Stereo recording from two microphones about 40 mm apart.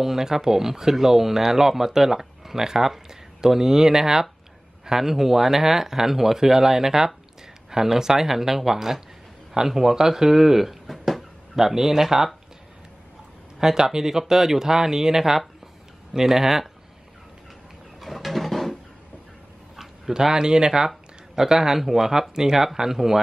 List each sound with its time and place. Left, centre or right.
0.0 s speech: centre
13.6 s speech: centre
18.0 s a sound: centre
19.8 s speech: centre